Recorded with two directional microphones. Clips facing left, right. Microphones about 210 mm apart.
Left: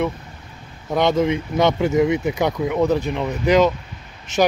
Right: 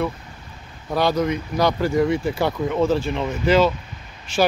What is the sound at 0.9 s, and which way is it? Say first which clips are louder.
Speech: left 2 dB; 20° left (ahead or behind).